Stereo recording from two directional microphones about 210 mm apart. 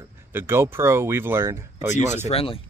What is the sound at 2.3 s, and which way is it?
Speech, 25° left (ahead or behind).